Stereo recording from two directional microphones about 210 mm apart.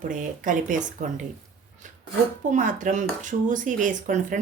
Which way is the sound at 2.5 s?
40° right (ahead or behind).